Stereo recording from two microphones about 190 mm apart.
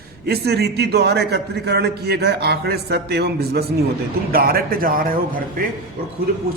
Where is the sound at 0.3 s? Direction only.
60° right (ahead or behind).